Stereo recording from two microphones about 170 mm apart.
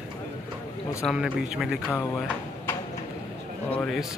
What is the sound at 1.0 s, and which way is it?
Speech, 5° right (ahead or behind).